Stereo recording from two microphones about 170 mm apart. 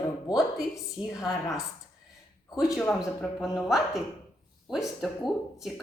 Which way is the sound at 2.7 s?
Centre (ahead or behind).